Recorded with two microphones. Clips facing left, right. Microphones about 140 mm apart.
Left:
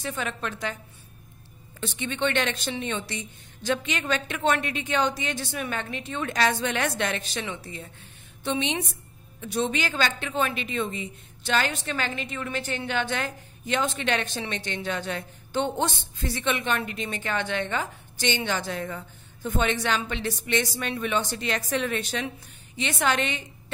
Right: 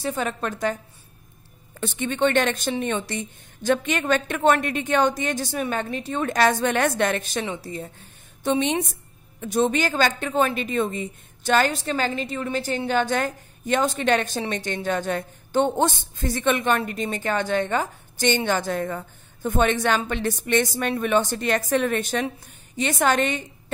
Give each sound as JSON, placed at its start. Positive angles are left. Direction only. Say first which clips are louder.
{"t": 0.0, "sound": "a woman's voice", "louder": "right 5 dB", "side_deg": -40}
{"t": 1.8, "sound": "a woman's voice", "louder": "right 6 dB", "side_deg": -45}